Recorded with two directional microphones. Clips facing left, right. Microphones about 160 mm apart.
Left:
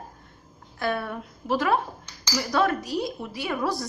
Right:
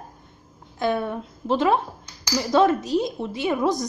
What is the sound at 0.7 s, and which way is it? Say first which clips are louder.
Speech: right 4 dB; 20° right (ahead or behind).